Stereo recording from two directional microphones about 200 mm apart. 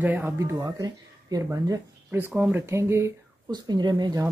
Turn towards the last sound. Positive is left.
turn(degrees=-20)  # may be behind; listen again after turning